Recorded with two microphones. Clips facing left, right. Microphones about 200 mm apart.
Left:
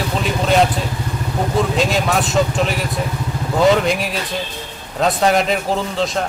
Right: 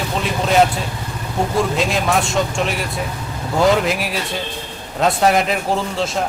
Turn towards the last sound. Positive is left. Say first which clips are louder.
# left 1 dB
turn(degrees=0)  # may be behind; listen again after turning